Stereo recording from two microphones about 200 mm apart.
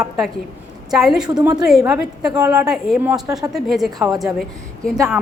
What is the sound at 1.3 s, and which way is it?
Speech, 20° right (ahead or behind).